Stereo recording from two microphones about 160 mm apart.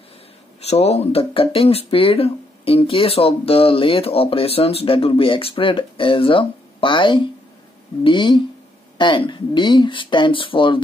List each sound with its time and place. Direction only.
0.6 s speech: 40° left (ahead or behind)